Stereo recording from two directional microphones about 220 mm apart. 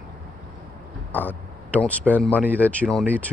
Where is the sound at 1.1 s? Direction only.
10° left (ahead or behind).